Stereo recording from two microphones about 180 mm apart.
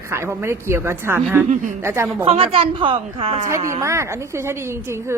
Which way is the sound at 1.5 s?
45° right (ahead or behind).